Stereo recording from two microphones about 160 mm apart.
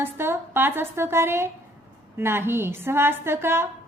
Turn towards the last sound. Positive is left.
turn(degrees=-15)  # may be behind; listen again after turning